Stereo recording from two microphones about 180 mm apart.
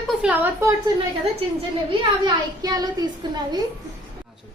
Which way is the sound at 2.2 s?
20° right (ahead or behind).